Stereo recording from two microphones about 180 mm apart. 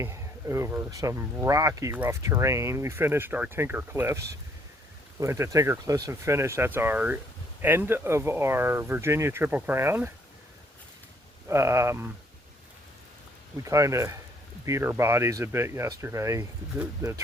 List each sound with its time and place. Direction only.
0.0 s speech: 15° right (ahead or behind)
5.2 s speech: 15° right (ahead or behind)
11.4 s speech: 15° right (ahead or behind)
13.7 s speech: 15° right (ahead or behind)